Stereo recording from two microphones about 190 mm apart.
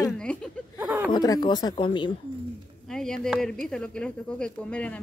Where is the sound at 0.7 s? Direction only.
10° right (ahead or behind).